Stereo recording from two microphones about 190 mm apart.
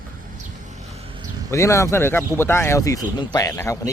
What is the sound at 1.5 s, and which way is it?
Speech, 15° left (ahead or behind).